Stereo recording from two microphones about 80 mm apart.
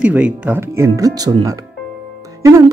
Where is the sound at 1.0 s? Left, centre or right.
Right.